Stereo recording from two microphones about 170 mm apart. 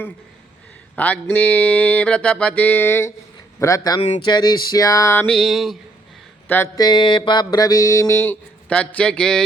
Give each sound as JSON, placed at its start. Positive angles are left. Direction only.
{"t": 0.9, "sound": "music", "side_deg": 10}
{"t": 3.6, "sound": "mantra", "side_deg": 20}
{"t": 5.2, "sound": "a sound", "side_deg": 0}
{"t": 6.5, "sound": "music", "side_deg": 15}
{"t": 6.8, "sound": "mantra", "side_deg": 25}